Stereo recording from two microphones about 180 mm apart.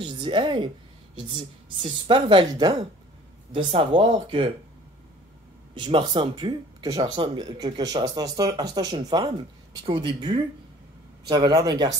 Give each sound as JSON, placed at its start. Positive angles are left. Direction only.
{"t": 0.0, "sound": "speech", "side_deg": -25}
{"t": 5.8, "sound": "speech", "side_deg": -30}